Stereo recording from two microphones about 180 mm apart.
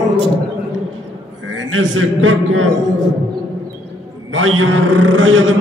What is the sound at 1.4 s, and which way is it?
Speech, 90° right.